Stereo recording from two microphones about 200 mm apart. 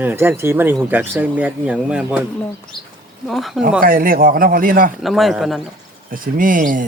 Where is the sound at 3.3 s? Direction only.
Centre (ahead or behind).